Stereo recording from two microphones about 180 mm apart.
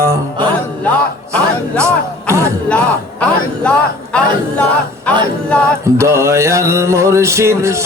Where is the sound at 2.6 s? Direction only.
5° left (ahead or behind).